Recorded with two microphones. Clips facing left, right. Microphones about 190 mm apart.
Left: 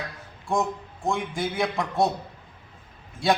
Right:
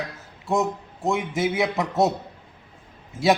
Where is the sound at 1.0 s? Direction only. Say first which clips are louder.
Right 4 dB; 20° right (ahead or behind).